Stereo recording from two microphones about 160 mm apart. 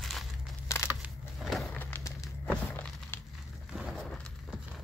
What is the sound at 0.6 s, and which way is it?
Crushing, 15° left (ahead or behind).